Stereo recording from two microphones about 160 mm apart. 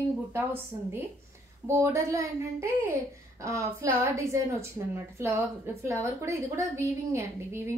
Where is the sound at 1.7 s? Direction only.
20° right (ahead or behind).